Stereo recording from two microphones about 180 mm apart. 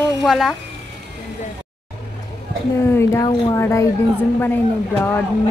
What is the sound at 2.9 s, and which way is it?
A woman's voice, 15° left (ahead or behind).